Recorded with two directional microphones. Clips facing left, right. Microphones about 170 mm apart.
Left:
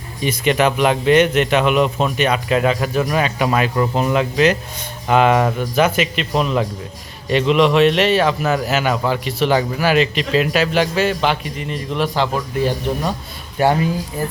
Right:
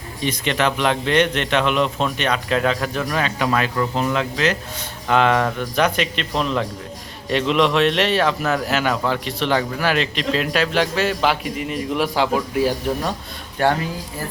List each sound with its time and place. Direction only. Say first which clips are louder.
0.2 s a man's voice: left 4 dB; 10° left (ahead or behind); by 12.7 s 10° right (ahead or behind)
13.6 s a man's voice: left 3 dB; 10° left (ahead or behind)